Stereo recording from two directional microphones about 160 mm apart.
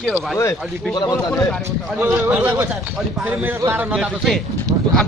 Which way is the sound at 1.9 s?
10° right (ahead or behind).